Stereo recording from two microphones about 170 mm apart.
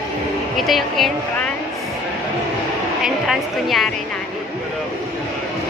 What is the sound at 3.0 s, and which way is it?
Speech, centre (ahead or behind).